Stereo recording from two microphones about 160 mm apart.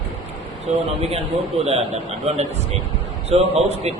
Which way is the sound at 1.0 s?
40° right (ahead or behind).